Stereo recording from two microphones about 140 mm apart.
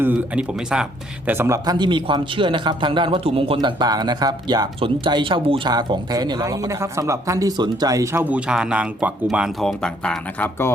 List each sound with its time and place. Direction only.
0.0 s speech: 10° right (ahead or behind)
1.3 s a man's voice: 20° right (ahead or behind); by 10.5 s 5° left (ahead or behind)